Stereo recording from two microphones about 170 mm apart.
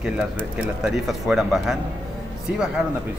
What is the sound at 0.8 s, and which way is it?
Speech, 5° right (ahead or behind).